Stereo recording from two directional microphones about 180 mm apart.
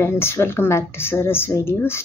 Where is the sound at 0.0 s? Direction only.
15° left (ahead or behind).